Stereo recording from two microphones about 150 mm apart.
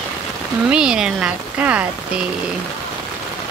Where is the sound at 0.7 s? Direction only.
5° right (ahead or behind).